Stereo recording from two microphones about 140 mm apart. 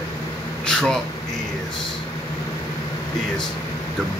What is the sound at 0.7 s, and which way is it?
Speech, 5° left (ahead or behind).